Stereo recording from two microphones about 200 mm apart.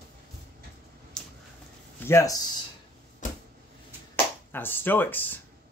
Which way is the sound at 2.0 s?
15° left (ahead or behind).